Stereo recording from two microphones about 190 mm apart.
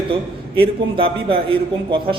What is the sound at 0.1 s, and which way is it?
A man's voice, 30° right (ahead or behind).